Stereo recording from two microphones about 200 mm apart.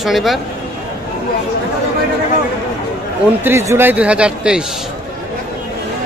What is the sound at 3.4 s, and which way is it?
A man's voice, 10° right (ahead or behind).